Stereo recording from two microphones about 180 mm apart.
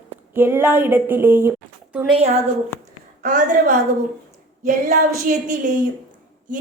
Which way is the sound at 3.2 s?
45° right (ahead or behind).